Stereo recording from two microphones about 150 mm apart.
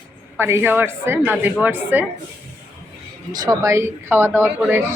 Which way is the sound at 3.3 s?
25° right (ahead or behind).